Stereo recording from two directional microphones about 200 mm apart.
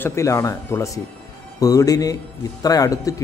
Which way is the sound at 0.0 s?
15° left (ahead or behind).